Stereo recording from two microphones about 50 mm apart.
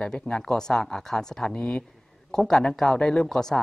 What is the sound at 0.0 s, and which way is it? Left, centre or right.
A woman's voice, centre.